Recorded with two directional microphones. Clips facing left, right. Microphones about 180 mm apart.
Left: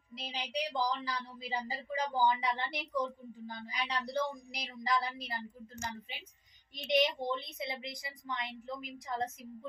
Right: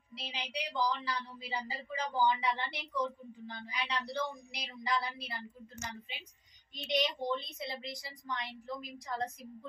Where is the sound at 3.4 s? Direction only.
45° left (ahead or behind).